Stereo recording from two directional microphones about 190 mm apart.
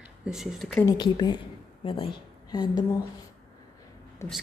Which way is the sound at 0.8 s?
20° left (ahead or behind).